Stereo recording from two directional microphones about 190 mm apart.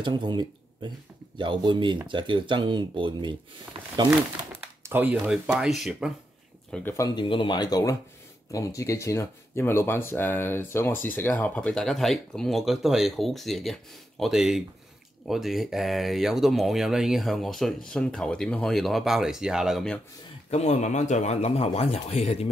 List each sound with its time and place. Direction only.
0.0 s speech: 25° right (ahead or behind)
4.6 s speech: 10° right (ahead or behind)
6.7 s speech: 10° left (ahead or behind)
7.2 s speech: 25° left (ahead or behind); by 20.0 s centre (ahead or behind)
20.4 s speech: 35° left (ahead or behind)